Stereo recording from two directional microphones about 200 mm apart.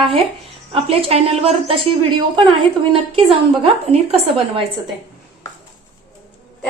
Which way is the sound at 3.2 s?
30° right (ahead or behind).